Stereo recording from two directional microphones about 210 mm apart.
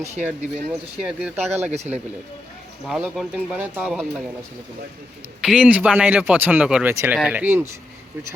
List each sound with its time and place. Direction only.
0.2 s speech: 5° right (ahead or behind)
1.7 s speech: 30° right (ahead or behind)
2.8 s speech: centre (ahead or behind)
5.4 s speech: 5° right (ahead or behind)